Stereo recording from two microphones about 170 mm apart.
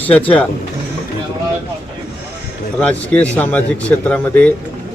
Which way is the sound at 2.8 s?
10° left (ahead or behind).